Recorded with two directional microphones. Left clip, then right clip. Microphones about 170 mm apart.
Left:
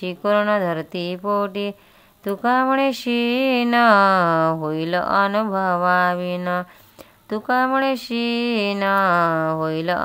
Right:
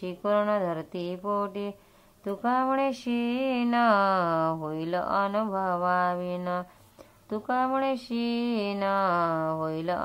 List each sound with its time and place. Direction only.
0.0 s speech: 20° left (ahead or behind)